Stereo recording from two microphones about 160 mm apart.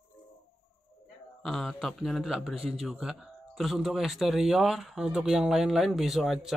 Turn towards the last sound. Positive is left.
turn(degrees=0)  # may be behind; listen again after turning